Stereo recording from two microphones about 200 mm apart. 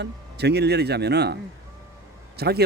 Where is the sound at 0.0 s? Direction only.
55° right (ahead or behind).